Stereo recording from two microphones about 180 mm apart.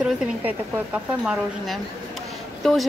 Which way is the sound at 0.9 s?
5° right (ahead or behind).